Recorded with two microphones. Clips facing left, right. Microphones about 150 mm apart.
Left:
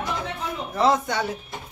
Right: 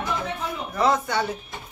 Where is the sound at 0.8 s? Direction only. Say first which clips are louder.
Left 1 dB; 20° left (ahead or behind).